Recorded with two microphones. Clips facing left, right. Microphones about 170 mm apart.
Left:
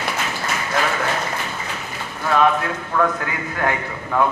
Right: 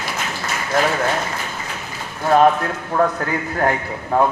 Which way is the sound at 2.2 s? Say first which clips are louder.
Right 4 dB; 40° right (ahead or behind).